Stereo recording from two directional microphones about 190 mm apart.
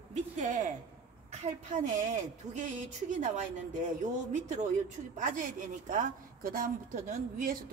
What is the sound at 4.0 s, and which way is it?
Speech, 40° right (ahead or behind).